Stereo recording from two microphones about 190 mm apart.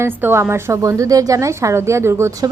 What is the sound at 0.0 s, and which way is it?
A woman's voice, 10° right (ahead or behind).